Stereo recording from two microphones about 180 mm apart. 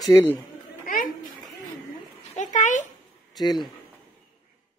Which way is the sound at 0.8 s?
50° left (ahead or behind).